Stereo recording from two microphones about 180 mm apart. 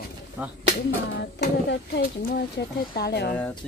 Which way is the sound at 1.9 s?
55° left (ahead or behind).